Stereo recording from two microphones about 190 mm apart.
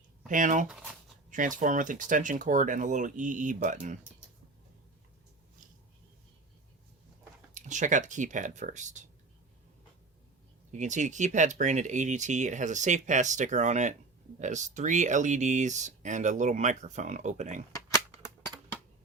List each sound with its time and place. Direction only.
0.3 s speech: 45° right (ahead or behind)
7.5 s speech: 40° right (ahead or behind)
10.7 s speech: 40° right (ahead or behind)
17.7 s cap gun: 15° left (ahead or behind)